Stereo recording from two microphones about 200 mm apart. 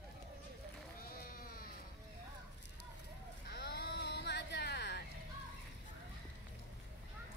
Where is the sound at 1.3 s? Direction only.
45° left (ahead or behind).